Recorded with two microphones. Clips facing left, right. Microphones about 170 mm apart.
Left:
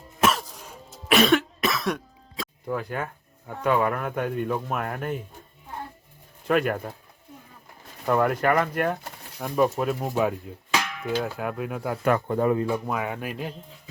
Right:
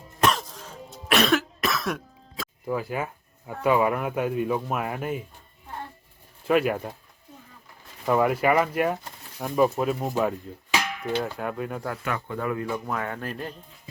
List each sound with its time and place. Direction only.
0.2 s cough: 5° left (ahead or behind)
6.5 s speech: 5° right (ahead or behind)
8.0 s speech: 5° right (ahead or behind)
12.0 s speech: 45° left (ahead or behind)
12.4 s speech: 30° left (ahead or behind); by 13.5 s 10° left (ahead or behind)